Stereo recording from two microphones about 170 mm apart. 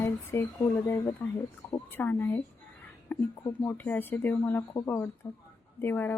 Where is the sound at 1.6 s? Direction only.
5° left (ahead or behind).